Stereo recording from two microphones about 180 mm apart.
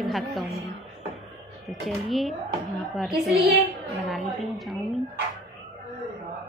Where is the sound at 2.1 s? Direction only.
Centre (ahead or behind).